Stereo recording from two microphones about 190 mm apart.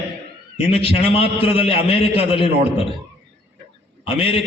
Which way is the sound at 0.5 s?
30° left (ahead or behind).